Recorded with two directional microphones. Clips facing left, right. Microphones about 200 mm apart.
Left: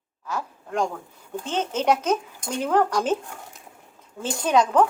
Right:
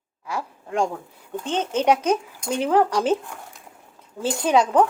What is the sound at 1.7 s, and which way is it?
Speech, 10° right (ahead or behind).